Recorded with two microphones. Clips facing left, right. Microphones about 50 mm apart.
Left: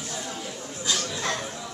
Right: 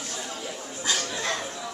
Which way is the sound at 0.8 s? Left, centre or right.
Right.